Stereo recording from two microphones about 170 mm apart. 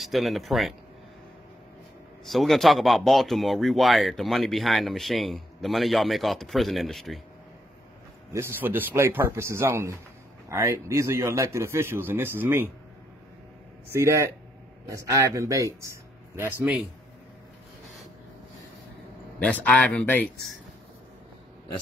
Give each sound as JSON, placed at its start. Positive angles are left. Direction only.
{"t": 0.0, "sound": "speech", "side_deg": 0}
{"t": 2.2, "sound": "speech", "side_deg": 0}
{"t": 8.3, "sound": "a man's voice", "side_deg": -15}
{"t": 13.9, "sound": "a man's voice", "side_deg": -15}
{"t": 19.6, "sound": "speech", "side_deg": 10}